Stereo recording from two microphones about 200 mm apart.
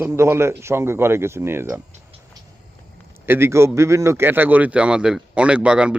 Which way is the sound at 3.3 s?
10° right (ahead or behind).